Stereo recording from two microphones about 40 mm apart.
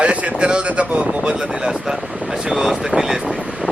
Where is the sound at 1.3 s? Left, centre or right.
Right.